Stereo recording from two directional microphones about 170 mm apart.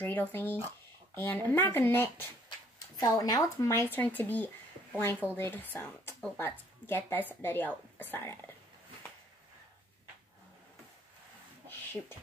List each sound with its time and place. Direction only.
0.0 s a woman's voice: 10° left (ahead or behind)